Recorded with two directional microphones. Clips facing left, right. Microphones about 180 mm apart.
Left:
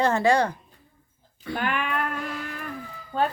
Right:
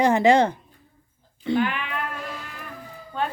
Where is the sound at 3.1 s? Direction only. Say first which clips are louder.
Left 3 dB; 40° left (ahead or behind).